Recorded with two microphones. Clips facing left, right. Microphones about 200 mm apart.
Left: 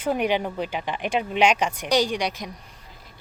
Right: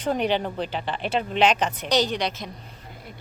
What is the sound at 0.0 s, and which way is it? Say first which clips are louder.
Speech: even; 10° left (ahead or behind).